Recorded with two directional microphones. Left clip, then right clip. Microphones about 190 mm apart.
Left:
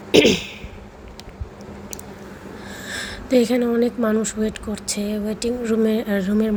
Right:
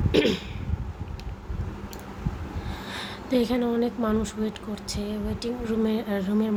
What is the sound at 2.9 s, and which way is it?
A woman's voice, 15° left (ahead or behind).